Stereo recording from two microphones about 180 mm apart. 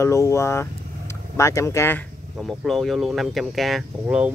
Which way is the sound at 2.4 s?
Centre (ahead or behind).